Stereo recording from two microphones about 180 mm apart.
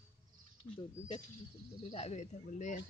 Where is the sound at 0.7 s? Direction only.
25° left (ahead or behind).